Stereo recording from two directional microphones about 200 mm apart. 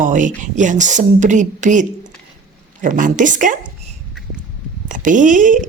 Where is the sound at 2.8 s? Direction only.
40° right (ahead or behind).